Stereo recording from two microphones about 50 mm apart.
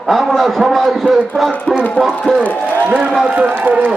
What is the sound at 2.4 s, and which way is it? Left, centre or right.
Speech, left.